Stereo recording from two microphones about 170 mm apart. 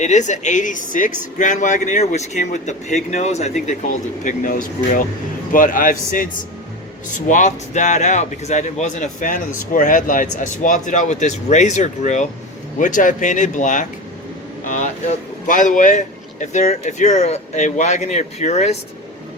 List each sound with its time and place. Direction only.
0.0 s speech: 45° left (ahead or behind)
14.6 s air conditioning: 50° left (ahead or behind)
15.4 s speech: 50° left (ahead or behind)